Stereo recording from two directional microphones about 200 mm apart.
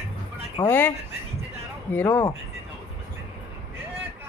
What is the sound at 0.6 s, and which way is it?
Speech, 10° left (ahead or behind).